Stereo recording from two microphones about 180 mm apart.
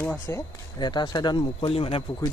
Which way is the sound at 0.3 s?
25° left (ahead or behind).